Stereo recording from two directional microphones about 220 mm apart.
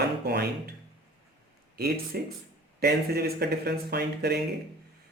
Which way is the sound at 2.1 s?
45° right (ahead or behind).